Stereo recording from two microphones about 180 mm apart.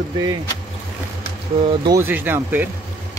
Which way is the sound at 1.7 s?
20° right (ahead or behind).